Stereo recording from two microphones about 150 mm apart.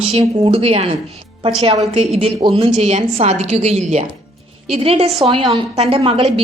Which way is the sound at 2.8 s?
45° right (ahead or behind).